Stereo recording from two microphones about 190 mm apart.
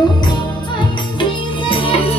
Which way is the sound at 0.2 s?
25° left (ahead or behind).